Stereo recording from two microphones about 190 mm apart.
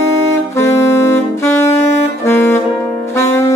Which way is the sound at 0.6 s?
15° left (ahead or behind).